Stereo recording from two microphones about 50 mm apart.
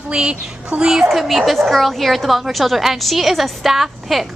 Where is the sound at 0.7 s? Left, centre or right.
Right.